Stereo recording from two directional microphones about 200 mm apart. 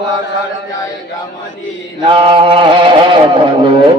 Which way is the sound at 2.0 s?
25° right (ahead or behind).